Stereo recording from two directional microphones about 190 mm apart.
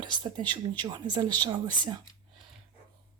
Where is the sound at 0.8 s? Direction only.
25° right (ahead or behind).